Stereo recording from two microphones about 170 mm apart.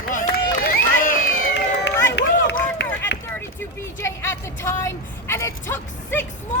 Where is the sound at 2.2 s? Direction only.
90° left.